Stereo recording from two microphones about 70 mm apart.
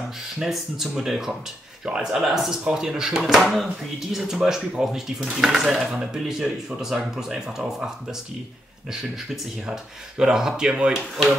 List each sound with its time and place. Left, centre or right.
0.4 s speech: centre
9.3 s speech: centre